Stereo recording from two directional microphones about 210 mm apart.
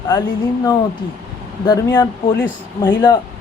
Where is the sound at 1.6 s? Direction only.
20° left (ahead or behind).